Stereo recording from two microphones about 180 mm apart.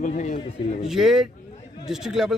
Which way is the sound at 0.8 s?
Centre (ahead or behind).